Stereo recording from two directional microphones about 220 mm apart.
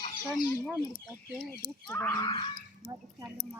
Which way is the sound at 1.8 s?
10° left (ahead or behind).